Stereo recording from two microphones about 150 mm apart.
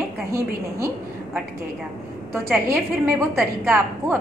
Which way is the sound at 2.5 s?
15° right (ahead or behind).